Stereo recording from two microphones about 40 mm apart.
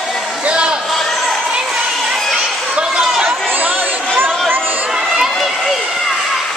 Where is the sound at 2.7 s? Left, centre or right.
Centre.